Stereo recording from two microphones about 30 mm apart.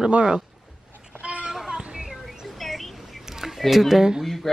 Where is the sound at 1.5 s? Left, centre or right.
Centre.